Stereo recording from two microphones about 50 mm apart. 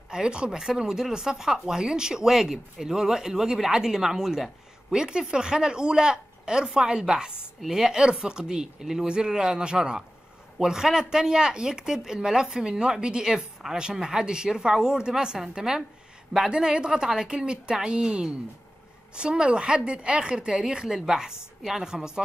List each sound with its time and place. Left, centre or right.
0.1 s speech: centre